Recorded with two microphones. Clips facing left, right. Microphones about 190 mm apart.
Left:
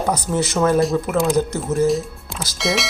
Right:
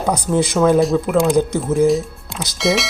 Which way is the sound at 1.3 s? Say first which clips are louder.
Right 3 dB; 10° right (ahead or behind).